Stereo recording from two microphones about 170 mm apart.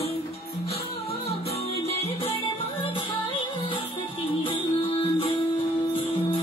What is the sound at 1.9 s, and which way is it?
Music, 35° left (ahead or behind).